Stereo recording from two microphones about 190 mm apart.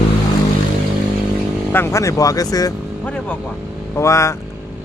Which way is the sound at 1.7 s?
15° left (ahead or behind).